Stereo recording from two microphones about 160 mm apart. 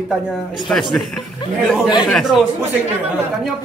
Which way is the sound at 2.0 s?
Centre (ahead or behind).